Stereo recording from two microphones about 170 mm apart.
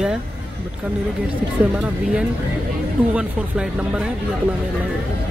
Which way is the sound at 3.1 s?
5° right (ahead or behind).